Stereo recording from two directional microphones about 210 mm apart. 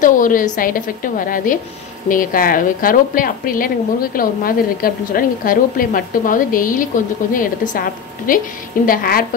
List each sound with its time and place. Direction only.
0.0 s a woman's voice: 40° left (ahead or behind)